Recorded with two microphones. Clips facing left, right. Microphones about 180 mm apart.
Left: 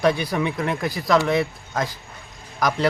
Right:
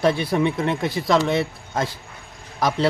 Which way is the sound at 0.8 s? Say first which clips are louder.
Right 2 dB; 25° right (ahead or behind).